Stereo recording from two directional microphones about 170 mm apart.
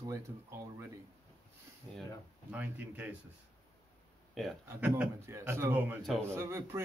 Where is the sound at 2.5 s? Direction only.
10° right (ahead or behind).